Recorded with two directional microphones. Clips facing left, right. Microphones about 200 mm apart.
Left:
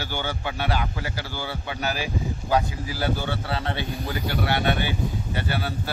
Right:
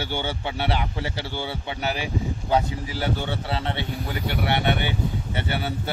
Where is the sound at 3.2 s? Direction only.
25° right (ahead or behind).